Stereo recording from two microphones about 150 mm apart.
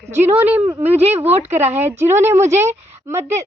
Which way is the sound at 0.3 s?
10° right (ahead or behind).